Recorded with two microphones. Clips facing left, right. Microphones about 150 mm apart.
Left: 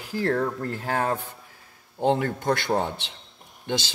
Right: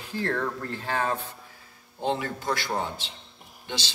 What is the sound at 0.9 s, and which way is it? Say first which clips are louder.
Speech: left 2 dB; 45° left (ahead or behind).